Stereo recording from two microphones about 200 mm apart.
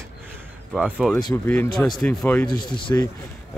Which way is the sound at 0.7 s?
Centre (ahead or behind).